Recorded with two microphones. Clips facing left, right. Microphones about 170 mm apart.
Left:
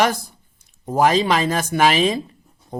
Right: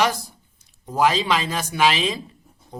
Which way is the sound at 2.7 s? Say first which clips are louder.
Left 7 dB; 55° left (ahead or behind).